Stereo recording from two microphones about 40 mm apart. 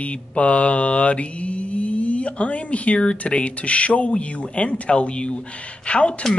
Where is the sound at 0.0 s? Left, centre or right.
Left.